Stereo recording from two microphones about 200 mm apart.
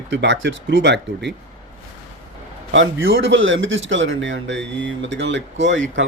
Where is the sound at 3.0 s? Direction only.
70° right (ahead or behind).